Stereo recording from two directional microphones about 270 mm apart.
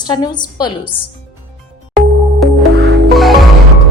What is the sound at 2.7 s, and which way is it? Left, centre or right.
Music, right.